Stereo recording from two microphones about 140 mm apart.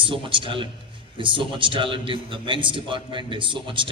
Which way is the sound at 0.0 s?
35° right (ahead or behind).